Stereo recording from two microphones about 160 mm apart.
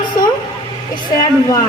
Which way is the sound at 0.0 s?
25° left (ahead or behind).